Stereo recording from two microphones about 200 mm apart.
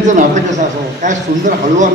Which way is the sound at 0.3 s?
40° right (ahead or behind).